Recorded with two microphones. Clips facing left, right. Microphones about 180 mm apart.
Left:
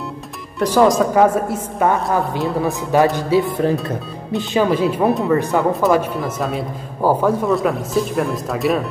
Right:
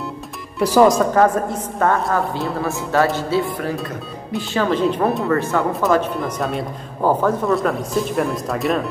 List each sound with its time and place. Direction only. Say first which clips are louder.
0.6 s speech: even; 5° right (ahead or behind)
1.1 s speech: left 1 dB; 10° left (ahead or behind)
5.3 s speech: left 2 dB; 15° left (ahead or behind)
5.7 s speech: left 2 dB; 5° left (ahead or behind)